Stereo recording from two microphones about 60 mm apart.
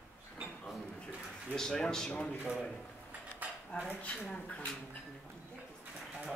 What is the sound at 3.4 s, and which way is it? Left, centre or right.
Cutlery, right.